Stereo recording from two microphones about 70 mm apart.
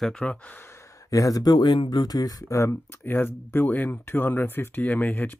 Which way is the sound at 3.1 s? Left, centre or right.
Left.